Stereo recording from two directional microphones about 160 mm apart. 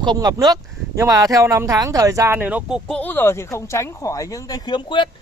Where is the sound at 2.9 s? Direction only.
10° left (ahead or behind); by 5.0 s 30° left (ahead or behind).